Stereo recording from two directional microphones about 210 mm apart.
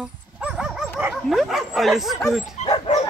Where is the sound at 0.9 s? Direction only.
5° right (ahead or behind).